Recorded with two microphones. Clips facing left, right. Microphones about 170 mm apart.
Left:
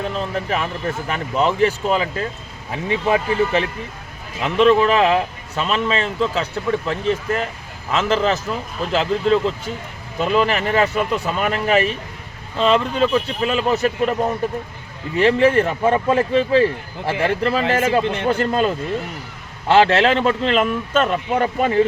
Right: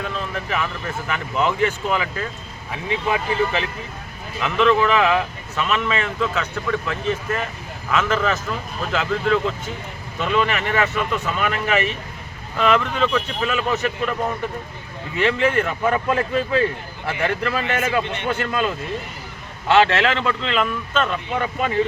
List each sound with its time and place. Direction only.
0.0 s speech: 35° left (ahead or behind)
4.4 s a man's voice: 30° left (ahead or behind)